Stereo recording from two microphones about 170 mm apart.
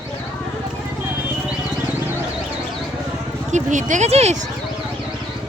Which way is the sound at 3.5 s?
45° right (ahead or behind).